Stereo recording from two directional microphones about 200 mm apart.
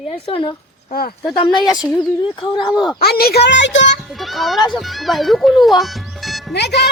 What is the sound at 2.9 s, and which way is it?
Speech, 50° left (ahead or behind).